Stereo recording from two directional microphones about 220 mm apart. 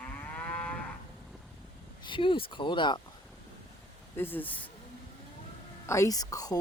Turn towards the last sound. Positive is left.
turn(degrees=15)  # may be behind; listen again after turning